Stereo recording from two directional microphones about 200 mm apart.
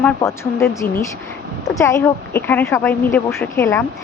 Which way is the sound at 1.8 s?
15° left (ahead or behind).